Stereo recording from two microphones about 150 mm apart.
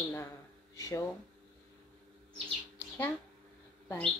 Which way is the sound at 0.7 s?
20° left (ahead or behind).